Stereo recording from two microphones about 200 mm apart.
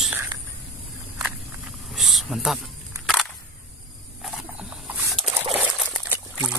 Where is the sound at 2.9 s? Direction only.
15° right (ahead or behind).